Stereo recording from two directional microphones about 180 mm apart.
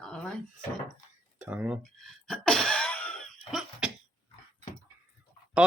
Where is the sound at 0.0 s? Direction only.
5° left (ahead or behind).